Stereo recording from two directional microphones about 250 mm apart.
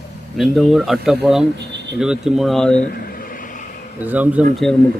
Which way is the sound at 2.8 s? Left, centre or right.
Left.